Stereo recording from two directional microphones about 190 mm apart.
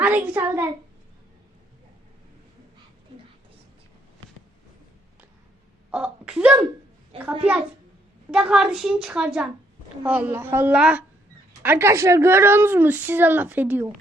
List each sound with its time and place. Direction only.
0.0 s a child's voice: 10° right (ahead or behind)
5.9 s a woman's voice: 5° right (ahead or behind)